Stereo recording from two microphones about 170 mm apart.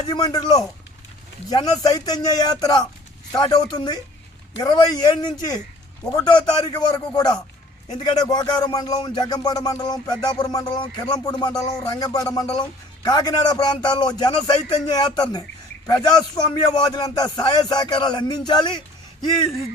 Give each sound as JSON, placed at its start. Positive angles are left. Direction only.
{"t": 0.0, "sound": "a man's voice", "side_deg": 25}